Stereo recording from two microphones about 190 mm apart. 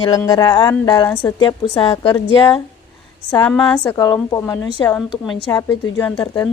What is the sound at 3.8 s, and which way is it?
A woman's voice, 20° left (ahead or behind).